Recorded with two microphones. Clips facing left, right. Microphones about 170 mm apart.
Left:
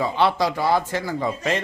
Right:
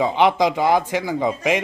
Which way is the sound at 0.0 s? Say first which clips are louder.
Right 4 dB; 15° right (ahead or behind).